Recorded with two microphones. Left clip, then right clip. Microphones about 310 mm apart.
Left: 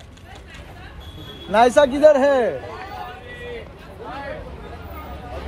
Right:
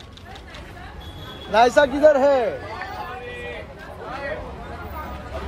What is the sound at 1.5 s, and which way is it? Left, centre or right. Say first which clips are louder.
A man's voice: left 1 dB; left.